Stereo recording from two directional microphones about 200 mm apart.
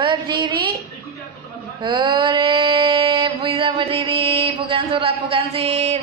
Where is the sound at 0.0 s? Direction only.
25° right (ahead or behind).